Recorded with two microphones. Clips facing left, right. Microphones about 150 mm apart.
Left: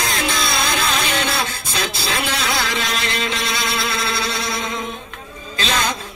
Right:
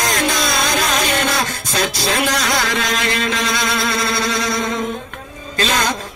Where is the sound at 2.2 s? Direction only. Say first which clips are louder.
Right 3 dB; 45° right (ahead or behind).